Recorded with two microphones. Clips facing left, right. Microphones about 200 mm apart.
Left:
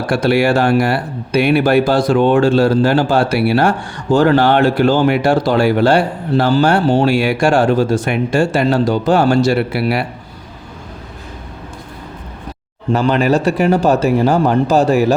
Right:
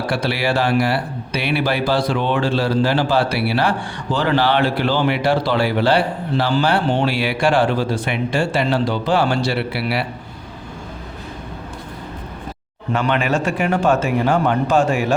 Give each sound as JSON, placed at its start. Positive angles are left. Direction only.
{"t": 0.1, "sound": "speech", "side_deg": 50}
{"t": 12.9, "sound": "a man's voice", "side_deg": 35}